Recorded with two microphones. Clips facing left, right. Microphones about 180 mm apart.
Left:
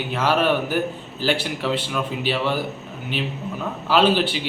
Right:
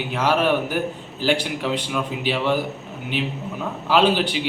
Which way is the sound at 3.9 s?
15° right (ahead or behind).